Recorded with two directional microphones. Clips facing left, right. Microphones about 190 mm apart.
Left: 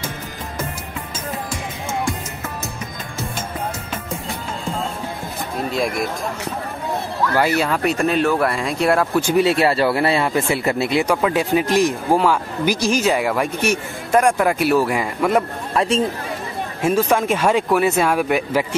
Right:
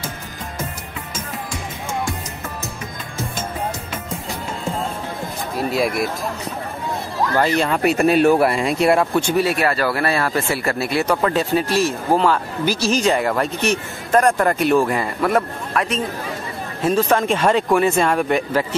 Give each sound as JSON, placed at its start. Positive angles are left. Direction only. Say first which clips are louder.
{"t": 5.6, "sound": "speech", "louder": "right 2 dB", "side_deg": -5}
{"t": 7.3, "sound": "speech", "louder": "even", "side_deg": 5}
{"t": 9.4, "sound": "speech", "louder": "left 6 dB", "side_deg": 25}
{"t": 15.7, "sound": "speech", "louder": "left 3 dB", "side_deg": 25}
{"t": 16.8, "sound": "speech", "louder": "even", "side_deg": 10}